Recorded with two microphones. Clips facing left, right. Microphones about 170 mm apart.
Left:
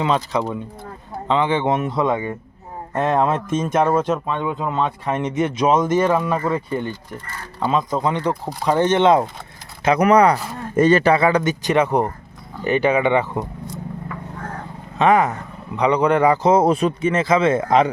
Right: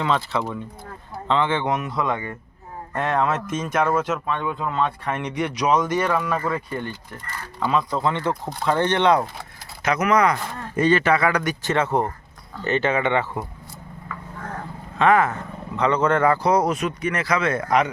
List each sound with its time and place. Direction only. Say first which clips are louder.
0.0 s speech: left 3 dB; 20° left (ahead or behind)
4.3 s speech: left 3 dB; 20° left (ahead or behind)
9.8 s speech: left 5 dB; 30° left (ahead or behind); by 13.4 s 15° left (ahead or behind)
14.9 s speech: left 2 dB; 20° left (ahead or behind)